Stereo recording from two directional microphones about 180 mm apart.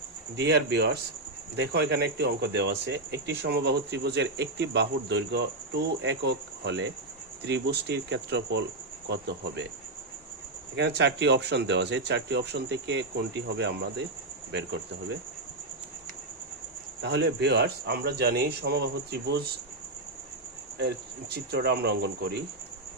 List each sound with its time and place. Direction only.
0.3 s speech: 70° right (ahead or behind)
10.8 s speech: 75° right (ahead or behind)
17.0 s speech: 75° right (ahead or behind)
21.3 s speech: 65° right (ahead or behind)